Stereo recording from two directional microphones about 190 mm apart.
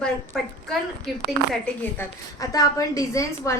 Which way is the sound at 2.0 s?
20° left (ahead or behind).